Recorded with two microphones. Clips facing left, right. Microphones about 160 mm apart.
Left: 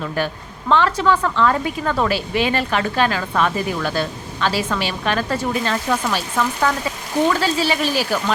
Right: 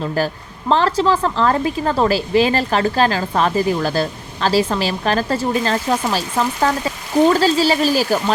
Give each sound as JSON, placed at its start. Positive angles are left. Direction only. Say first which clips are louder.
{"t": 0.2, "sound": "a woman's voice", "louder": "right 3 dB", "side_deg": -35}